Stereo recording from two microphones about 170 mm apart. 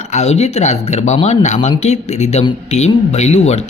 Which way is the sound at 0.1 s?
40° left (ahead or behind).